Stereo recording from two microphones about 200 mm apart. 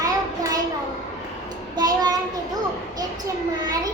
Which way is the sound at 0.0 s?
20° right (ahead or behind).